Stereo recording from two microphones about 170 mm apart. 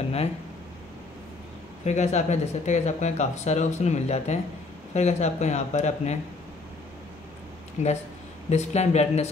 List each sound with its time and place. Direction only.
1.9 s speech: 40° left (ahead or behind)
7.8 s speech: 45° left (ahead or behind)